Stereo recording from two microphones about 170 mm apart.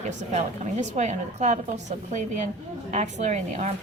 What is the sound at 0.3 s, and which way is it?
A woman's voice, 45° right (ahead or behind).